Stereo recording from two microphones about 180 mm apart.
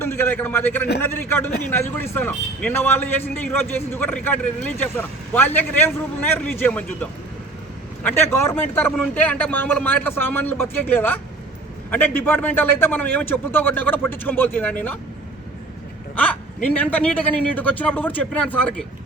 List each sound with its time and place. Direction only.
0.0 s a man's voice: 15° left (ahead or behind)
16.1 s a man's voice: 10° left (ahead or behind)